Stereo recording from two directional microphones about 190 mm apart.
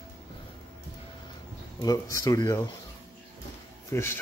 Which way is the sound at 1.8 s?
20° left (ahead or behind).